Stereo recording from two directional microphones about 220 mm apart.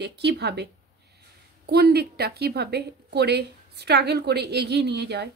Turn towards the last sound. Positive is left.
turn(degrees=-50)  # may be behind; listen again after turning